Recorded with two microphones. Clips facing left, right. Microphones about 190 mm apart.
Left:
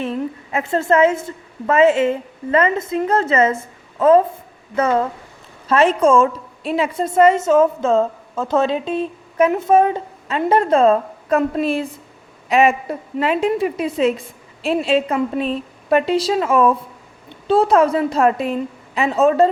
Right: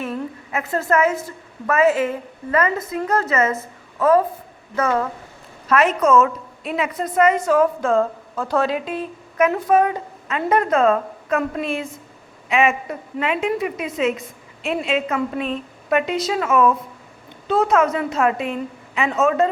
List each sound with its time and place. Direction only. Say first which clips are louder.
0.0 s a woman's voice: left 4 dB; 30° left (ahead or behind)